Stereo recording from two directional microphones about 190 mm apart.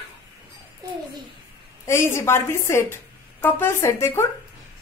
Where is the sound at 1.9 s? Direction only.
15° left (ahead or behind).